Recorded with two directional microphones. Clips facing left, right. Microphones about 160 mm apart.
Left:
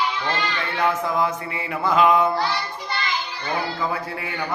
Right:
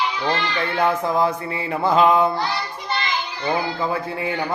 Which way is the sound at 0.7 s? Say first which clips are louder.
Right 2 dB; 30° right (ahead or behind).